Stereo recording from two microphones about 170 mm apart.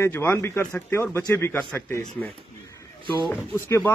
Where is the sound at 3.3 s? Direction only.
15° left (ahead or behind).